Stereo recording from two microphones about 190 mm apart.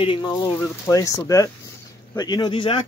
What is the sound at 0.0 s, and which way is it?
Speech, 25° left (ahead or behind).